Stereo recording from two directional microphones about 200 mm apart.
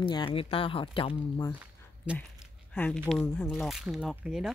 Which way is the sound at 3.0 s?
5° left (ahead or behind).